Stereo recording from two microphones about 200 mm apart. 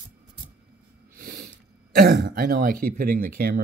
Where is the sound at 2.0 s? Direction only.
50° right (ahead or behind).